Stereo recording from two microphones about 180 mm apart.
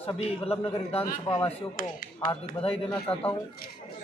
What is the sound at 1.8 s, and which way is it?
Speech, 50° left (ahead or behind).